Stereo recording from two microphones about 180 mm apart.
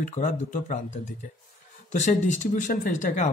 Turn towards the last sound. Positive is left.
turn(degrees=45)  # may be behind; listen again after turning